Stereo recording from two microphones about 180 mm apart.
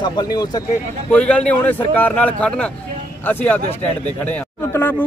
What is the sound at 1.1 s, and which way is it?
A man's voice, 5° left (ahead or behind).